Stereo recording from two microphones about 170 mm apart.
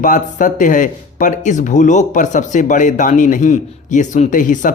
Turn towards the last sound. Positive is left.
turn(degrees=50)  # may be behind; listen again after turning